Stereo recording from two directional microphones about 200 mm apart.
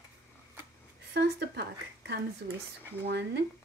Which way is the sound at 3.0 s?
55° right (ahead or behind).